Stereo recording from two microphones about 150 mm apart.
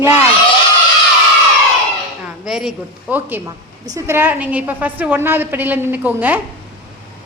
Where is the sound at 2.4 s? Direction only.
5° right (ahead or behind).